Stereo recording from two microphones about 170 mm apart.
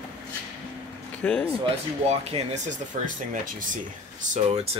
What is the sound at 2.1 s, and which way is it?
Speech, 40° right (ahead or behind).